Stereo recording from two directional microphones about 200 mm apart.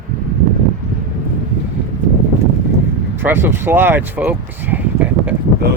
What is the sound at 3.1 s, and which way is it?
Speech, 10° right (ahead or behind).